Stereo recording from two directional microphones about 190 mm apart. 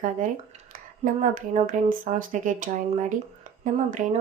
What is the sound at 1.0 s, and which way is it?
Speech, 45° right (ahead or behind).